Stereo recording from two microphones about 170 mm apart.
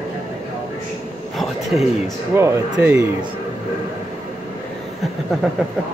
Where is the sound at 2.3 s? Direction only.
15° right (ahead or behind).